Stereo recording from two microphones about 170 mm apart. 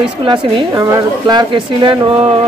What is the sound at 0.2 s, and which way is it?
A woman's voice, 30° right (ahead or behind).